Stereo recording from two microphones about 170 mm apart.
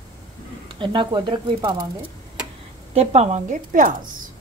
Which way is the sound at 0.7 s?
30° right (ahead or behind).